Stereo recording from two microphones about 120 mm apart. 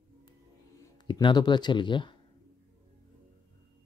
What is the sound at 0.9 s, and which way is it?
Speech, 40° left (ahead or behind).